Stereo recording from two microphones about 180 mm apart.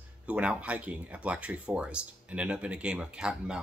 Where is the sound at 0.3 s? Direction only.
5° right (ahead or behind).